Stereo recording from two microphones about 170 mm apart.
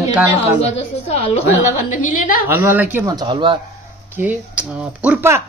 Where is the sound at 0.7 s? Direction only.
35° left (ahead or behind).